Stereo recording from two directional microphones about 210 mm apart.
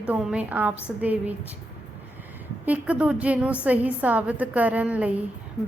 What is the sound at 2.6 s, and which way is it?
A woman's voice, 5° right (ahead or behind).